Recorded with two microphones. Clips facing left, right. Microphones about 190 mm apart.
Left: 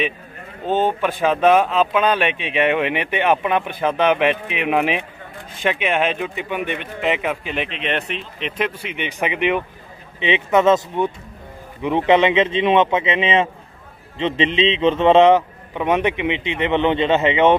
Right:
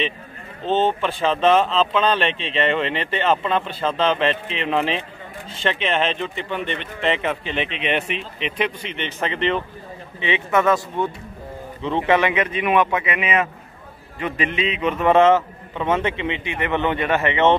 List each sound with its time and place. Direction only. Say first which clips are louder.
0.7 s a man's voice: left 1 dB; 10° left (ahead or behind)